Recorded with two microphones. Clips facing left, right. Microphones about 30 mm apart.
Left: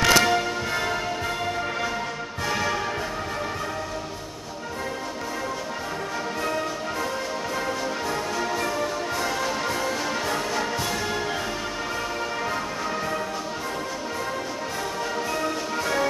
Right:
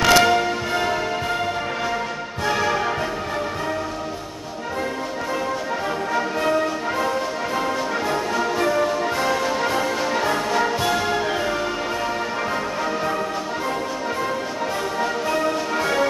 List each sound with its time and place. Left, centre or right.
0.0 s music: centre
2.4 s music: centre
6.1 s music: right
15.0 s music: centre